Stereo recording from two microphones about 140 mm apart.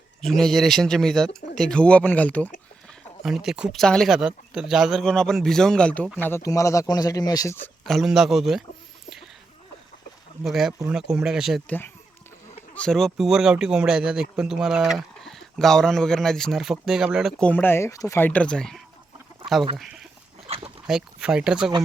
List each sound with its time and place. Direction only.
0.2 s speech: 5° left (ahead or behind)
3.2 s speech: 5° right (ahead or behind)
6.2 s speech: 20° left (ahead or behind)
7.9 s speech: centre (ahead or behind)
10.4 s speech: centre (ahead or behind)
12.7 s speech: 5° left (ahead or behind)